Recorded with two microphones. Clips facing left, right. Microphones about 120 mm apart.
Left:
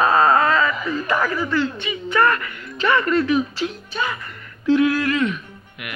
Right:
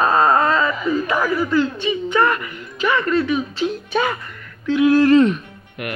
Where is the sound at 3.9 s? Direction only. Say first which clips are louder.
Right 6 dB; 60° right (ahead or behind).